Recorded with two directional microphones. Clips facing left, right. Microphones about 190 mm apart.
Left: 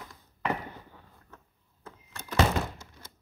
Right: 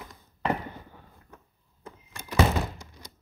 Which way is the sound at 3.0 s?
15° right (ahead or behind).